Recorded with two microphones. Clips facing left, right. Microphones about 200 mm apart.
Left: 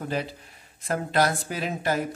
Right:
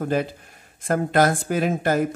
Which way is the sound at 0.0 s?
50° right (ahead or behind).